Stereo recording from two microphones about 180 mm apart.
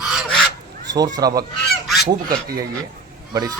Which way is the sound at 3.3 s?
20° right (ahead or behind).